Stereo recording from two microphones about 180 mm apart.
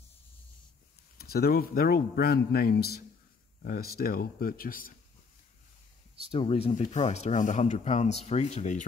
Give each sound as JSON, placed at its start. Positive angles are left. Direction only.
{"t": 1.1, "sound": "a man's voice", "side_deg": 60}
{"t": 6.3, "sound": "speech", "side_deg": 30}
{"t": 6.8, "sound": "speech", "side_deg": 40}